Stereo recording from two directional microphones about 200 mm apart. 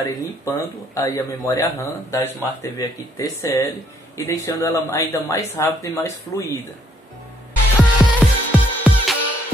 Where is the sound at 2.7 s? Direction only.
15° left (ahead or behind).